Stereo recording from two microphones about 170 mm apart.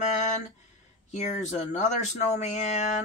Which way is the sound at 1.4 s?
45° left (ahead or behind).